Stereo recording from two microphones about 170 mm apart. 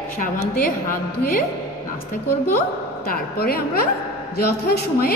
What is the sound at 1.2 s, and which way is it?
Speech, 60° left (ahead or behind).